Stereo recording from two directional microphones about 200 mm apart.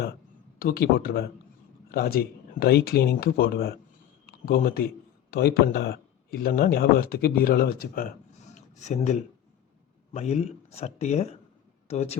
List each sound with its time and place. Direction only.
0.6 s speech: 50° left (ahead or behind)
8.5 s a man's voice: 35° left (ahead or behind)